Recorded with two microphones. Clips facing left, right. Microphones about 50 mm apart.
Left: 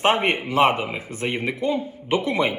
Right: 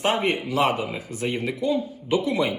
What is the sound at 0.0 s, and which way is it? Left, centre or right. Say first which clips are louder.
A man's voice: left 3 dB; left.